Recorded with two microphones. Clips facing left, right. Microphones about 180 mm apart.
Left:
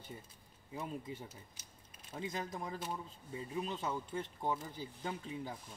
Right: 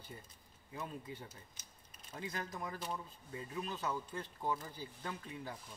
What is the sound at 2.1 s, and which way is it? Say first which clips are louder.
Speech: left 2 dB; 25° left (ahead or behind).